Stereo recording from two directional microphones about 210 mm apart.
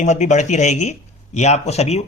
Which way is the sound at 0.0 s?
35° left (ahead or behind).